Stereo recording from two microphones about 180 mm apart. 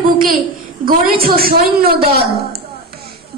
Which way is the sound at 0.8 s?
55° right (ahead or behind).